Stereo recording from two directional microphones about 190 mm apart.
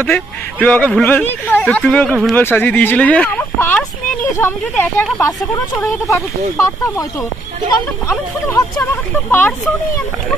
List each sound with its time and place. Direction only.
0.0 s speech: 10° left (ahead or behind)